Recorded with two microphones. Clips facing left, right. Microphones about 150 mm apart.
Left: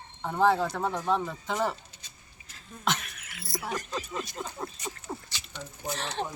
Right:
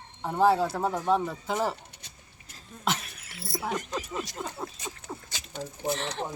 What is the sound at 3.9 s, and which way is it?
Speech, 10° right (ahead or behind).